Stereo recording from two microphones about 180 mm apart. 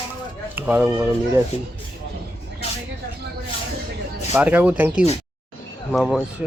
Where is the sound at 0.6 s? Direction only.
10° right (ahead or behind).